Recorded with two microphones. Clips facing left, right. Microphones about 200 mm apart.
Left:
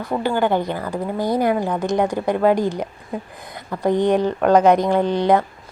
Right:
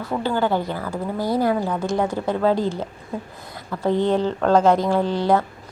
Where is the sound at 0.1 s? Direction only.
15° left (ahead or behind).